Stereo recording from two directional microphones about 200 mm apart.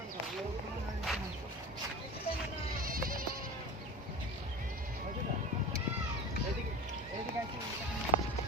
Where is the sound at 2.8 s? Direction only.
45° right (ahead or behind).